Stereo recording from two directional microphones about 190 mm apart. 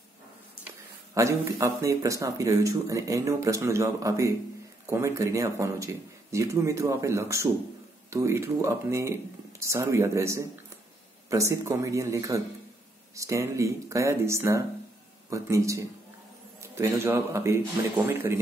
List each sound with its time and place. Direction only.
1.1 s speech: 15° right (ahead or behind)